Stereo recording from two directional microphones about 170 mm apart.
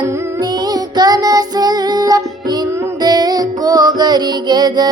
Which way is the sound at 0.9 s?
20° right (ahead or behind).